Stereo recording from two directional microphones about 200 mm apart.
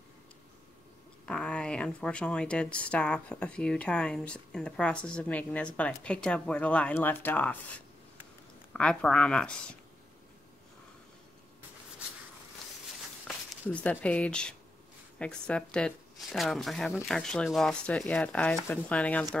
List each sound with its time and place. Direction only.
1.2 s speech: 5° left (ahead or behind)
13.3 s speech: 5° left (ahead or behind)